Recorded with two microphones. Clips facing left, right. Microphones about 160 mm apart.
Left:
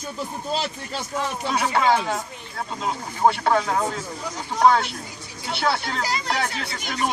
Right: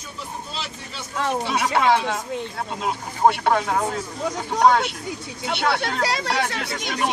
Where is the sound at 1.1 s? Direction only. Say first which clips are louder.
Right 4 dB; 60° right (ahead or behind).